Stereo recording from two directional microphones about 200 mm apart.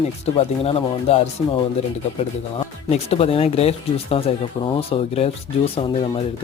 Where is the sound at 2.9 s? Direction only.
30° left (ahead or behind).